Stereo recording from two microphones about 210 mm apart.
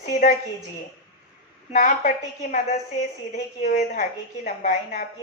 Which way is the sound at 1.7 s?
40° left (ahead or behind).